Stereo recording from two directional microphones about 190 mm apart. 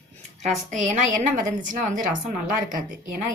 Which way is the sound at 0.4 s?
40° right (ahead or behind).